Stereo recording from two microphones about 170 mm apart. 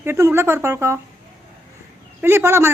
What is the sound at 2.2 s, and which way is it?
Speech, 15° right (ahead or behind).